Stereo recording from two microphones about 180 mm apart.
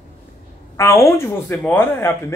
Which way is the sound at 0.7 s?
15° left (ahead or behind).